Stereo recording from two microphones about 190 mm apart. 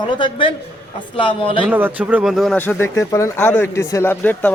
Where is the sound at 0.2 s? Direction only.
25° left (ahead or behind).